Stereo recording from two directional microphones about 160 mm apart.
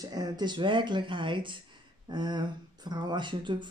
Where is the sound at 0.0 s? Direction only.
25° right (ahead or behind).